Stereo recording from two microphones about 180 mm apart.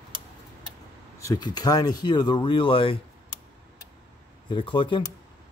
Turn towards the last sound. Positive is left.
turn(degrees=30)  # may be behind; listen again after turning